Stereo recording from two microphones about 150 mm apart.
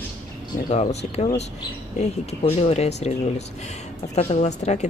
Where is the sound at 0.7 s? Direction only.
45° left (ahead or behind).